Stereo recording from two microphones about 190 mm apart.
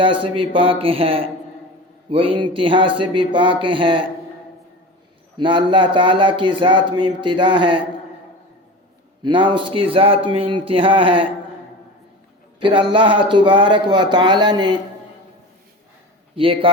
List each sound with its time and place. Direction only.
0.0 s speech: 25° right (ahead or behind)
5.4 s speech: 25° right (ahead or behind)
9.2 s speech: 25° right (ahead or behind)
12.5 s speech: 25° right (ahead or behind)
16.3 s speech: 30° right (ahead or behind)